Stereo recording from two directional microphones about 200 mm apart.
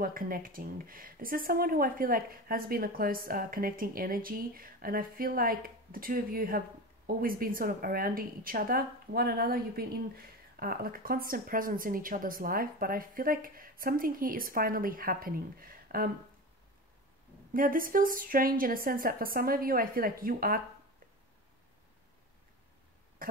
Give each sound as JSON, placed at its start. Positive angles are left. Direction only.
{"t": 0.0, "sound": "speech", "side_deg": -45}
{"t": 17.6, "sound": "speech", "side_deg": -45}